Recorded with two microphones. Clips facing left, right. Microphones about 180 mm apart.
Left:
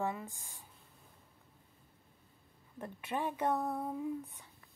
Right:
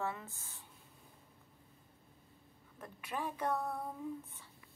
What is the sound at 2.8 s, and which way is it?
A woman's voice, 25° left (ahead or behind).